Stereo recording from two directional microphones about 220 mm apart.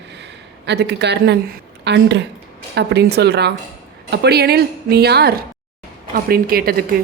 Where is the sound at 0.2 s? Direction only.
50° right (ahead or behind).